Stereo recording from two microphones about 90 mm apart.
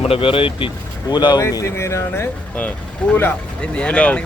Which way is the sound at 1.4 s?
35° left (ahead or behind).